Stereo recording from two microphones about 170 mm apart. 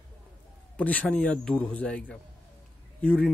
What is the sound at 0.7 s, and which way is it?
Speech, 10° left (ahead or behind).